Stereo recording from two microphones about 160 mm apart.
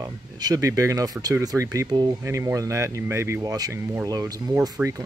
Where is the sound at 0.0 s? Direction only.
20° right (ahead or behind).